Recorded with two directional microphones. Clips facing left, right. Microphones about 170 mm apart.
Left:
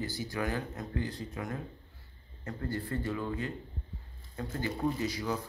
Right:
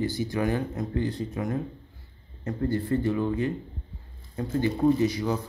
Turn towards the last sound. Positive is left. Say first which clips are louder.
# right 9 dB
turn(degrees=-20)  # may be behind; listen again after turning